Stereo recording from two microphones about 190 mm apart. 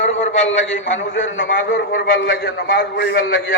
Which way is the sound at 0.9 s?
75° left (ahead or behind).